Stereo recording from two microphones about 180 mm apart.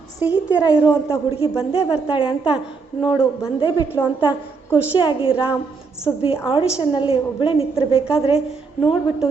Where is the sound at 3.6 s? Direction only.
20° left (ahead or behind).